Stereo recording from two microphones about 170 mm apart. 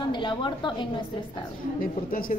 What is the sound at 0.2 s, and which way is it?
Speech, 25° left (ahead or behind).